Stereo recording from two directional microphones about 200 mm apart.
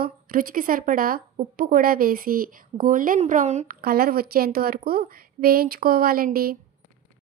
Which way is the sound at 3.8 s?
50° right (ahead or behind).